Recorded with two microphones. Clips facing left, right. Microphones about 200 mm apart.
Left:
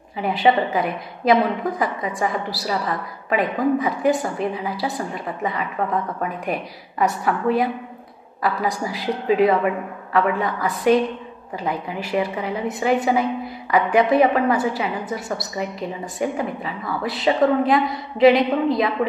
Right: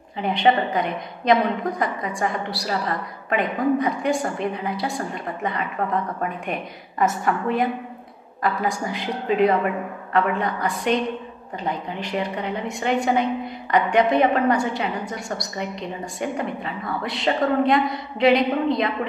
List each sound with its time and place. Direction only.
0.2 s a woman's voice: 5° left (ahead or behind)